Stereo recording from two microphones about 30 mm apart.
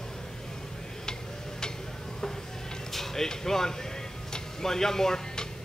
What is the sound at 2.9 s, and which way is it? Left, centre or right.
Speech, centre.